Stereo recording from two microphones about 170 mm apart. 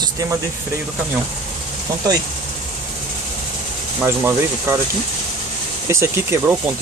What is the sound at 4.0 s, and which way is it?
Speech, 15° right (ahead or behind).